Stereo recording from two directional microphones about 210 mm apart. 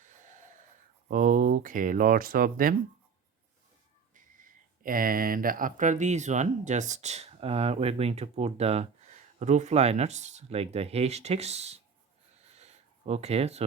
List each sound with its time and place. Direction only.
0.0 s snort: 35° right (ahead or behind)
1.0 s speech: 40° right (ahead or behind)
4.1 s speech: 40° right (ahead or behind)
12.4 s a sound: 30° right (ahead or behind)